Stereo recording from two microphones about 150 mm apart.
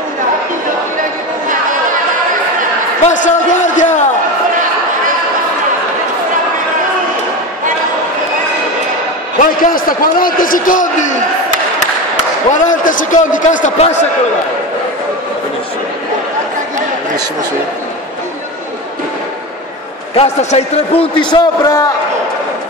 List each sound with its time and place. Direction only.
1.5 s chatter: 60° right (ahead or behind)
3.1 s a sound: 55° left (ahead or behind)
9.4 s a man's voice: 70° left (ahead or behind)
12.4 s a man's voice: 60° left (ahead or behind)
20.2 s a man's voice: 40° left (ahead or behind); by 21.9 s 25° left (ahead or behind)